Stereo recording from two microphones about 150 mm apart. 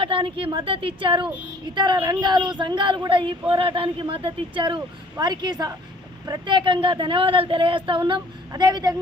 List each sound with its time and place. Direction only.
0.0 s a woman's voice: 35° right (ahead or behind)